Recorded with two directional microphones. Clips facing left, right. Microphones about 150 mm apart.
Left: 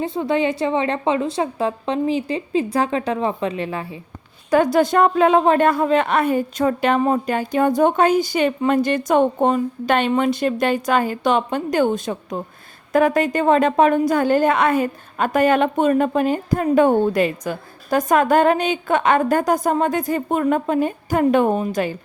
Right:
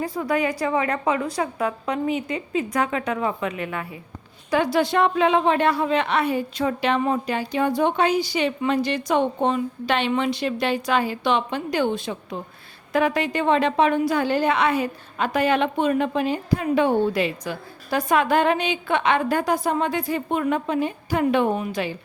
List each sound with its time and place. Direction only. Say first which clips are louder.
0.0 s a woman's voice: left 3 dB; 25° left (ahead or behind)
4.5 s a woman's voice: left 5 dB; 45° left (ahead or behind)